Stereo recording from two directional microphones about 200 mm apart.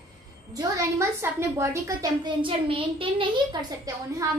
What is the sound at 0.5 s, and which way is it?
A woman's voice, 15° right (ahead or behind).